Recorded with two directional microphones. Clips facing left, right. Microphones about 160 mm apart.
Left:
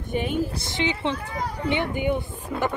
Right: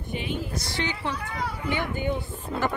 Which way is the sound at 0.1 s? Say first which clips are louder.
Left 6 dB; 50° left (ahead or behind).